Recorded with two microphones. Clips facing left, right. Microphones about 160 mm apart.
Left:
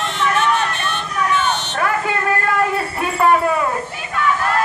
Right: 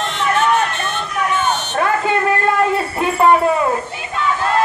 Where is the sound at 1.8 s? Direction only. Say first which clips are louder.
Right 5 dB; 25° right (ahead or behind).